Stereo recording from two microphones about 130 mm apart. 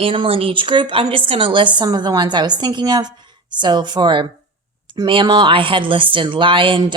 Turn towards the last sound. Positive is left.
turn(degrees=-40)  # may be behind; listen again after turning